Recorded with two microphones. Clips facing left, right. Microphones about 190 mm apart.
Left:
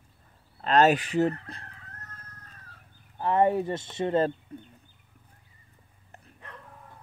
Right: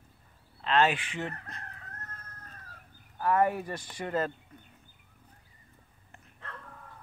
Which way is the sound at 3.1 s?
25° left (ahead or behind).